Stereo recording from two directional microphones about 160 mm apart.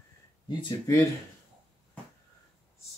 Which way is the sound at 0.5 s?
25° left (ahead or behind).